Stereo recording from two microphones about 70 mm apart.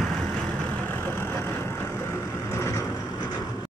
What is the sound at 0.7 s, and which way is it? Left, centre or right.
Vehicle, left.